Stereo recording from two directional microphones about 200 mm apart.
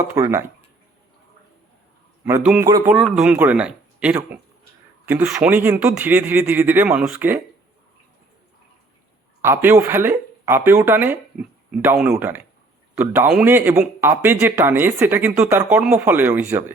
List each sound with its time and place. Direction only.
0.1 s speech: 15° right (ahead or behind)
2.4 s speech: 5° right (ahead or behind)
2.6 s speech: 15° right (ahead or behind)
2.9 s speech: centre (ahead or behind)
9.4 s speech: 10° right (ahead or behind)